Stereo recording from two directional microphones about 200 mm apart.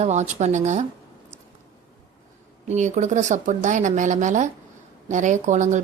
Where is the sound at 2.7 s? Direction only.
35° right (ahead or behind).